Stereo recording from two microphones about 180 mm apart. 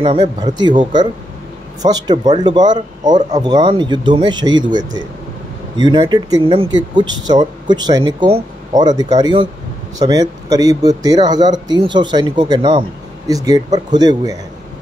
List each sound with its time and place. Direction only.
0.0 s speech: 25° right (ahead or behind)